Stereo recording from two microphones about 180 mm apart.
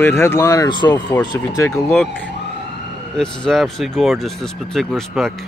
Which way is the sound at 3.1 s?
5° left (ahead or behind).